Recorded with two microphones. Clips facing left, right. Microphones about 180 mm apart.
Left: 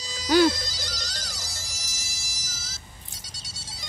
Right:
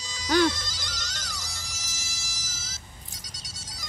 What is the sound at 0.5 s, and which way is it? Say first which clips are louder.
Music: left 4 dB; 35° left (ahead or behind).